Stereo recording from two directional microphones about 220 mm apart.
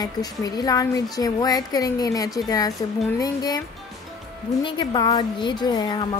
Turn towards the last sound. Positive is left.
turn(degrees=20)  # may be behind; listen again after turning